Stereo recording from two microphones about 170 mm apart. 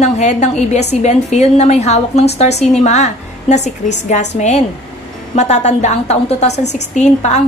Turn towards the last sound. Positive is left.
turn(degrees=45)  # may be behind; listen again after turning